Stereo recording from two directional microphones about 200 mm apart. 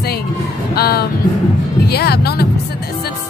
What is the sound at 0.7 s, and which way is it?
Music, 50° left (ahead or behind).